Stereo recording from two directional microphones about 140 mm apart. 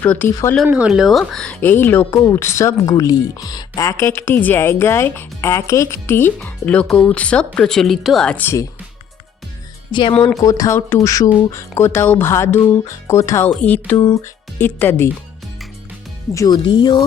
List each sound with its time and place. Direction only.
0.0 s speech: 10° left (ahead or behind)
0.6 s speech: 5° right (ahead or behind); by 8.6 s 15° left (ahead or behind)
9.9 s speech: 35° left (ahead or behind)
10.4 s speech: 20° left (ahead or behind)
13.5 s speech: 10° left (ahead or behind)
13.9 s speech: 25° left (ahead or behind)
16.3 s speech: 25° left (ahead or behind)
16.6 s speech: 35° left (ahead or behind)